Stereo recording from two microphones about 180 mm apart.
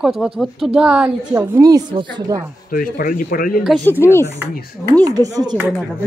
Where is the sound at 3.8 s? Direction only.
10° left (ahead or behind).